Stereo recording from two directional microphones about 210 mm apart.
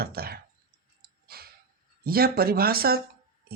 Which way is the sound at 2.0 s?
45° right (ahead or behind).